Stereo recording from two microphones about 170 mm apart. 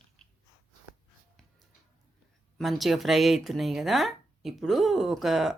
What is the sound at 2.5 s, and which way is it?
Speech, centre (ahead or behind).